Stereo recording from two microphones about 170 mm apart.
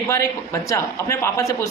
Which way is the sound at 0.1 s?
20° left (ahead or behind).